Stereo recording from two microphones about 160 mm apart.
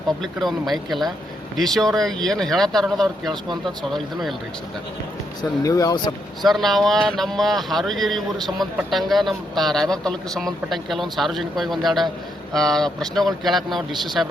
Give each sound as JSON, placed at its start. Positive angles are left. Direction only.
{"t": 0.2, "sound": "speech", "side_deg": 0}
{"t": 5.4, "sound": "speech", "side_deg": 20}
{"t": 6.4, "sound": "speech", "side_deg": 0}